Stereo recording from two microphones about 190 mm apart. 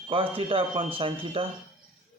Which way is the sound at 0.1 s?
30° right (ahead or behind).